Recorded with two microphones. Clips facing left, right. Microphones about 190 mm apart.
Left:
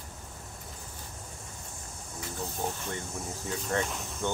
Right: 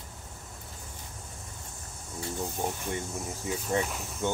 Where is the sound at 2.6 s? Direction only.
15° right (ahead or behind).